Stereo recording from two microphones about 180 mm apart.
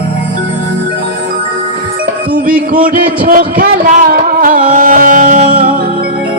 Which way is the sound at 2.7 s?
50° right (ahead or behind).